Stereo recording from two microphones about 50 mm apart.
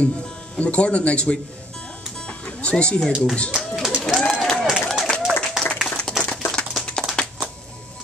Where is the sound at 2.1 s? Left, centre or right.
Left.